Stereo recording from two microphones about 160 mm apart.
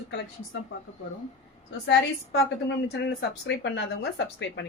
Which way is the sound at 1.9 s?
90° left.